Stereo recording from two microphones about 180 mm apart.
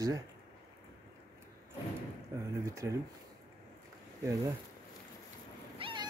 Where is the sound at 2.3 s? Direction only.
15° right (ahead or behind).